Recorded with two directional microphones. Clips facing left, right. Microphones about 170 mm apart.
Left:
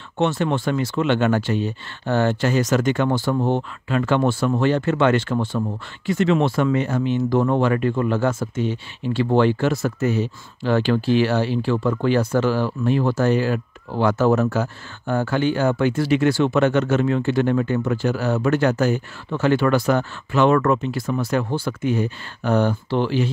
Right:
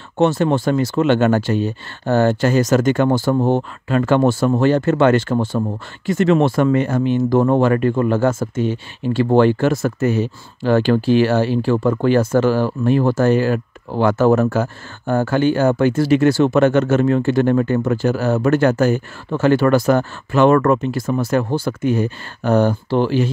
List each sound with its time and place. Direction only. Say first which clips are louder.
0.2 s speech: right 5 dB; 40° right (ahead or behind)